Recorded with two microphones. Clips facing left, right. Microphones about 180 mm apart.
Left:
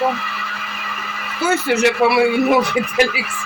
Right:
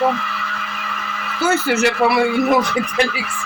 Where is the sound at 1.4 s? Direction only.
5° right (ahead or behind).